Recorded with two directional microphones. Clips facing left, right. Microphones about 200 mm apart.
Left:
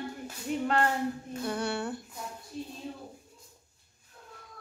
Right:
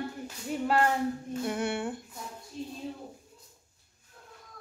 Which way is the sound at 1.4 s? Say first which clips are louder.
Right 1 dB; 20° right (ahead or behind).